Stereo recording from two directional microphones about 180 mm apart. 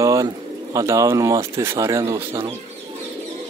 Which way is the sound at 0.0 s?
15° right (ahead or behind).